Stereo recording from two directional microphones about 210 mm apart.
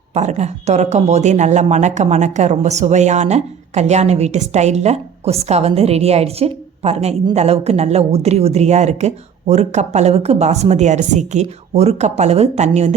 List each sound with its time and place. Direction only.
0.1 s speech: 35° right (ahead or behind)